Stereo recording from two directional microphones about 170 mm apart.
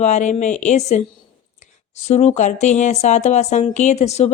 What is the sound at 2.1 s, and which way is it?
Speech, 40° left (ahead or behind).